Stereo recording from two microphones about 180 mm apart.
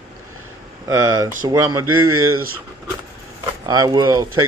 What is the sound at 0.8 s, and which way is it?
Speech, 20° right (ahead or behind).